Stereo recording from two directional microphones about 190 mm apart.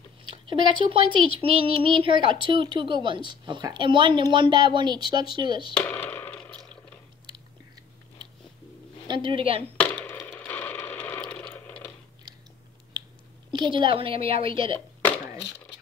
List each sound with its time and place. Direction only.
0.7 s a woman's voice: 25° right (ahead or behind)
5.8 s a sound: 10° left (ahead or behind)
9.0 s a woman's voice: 25° right (ahead or behind)
9.8 s coin: 10° left (ahead or behind)
13.5 s a woman's voice: 25° right (ahead or behind)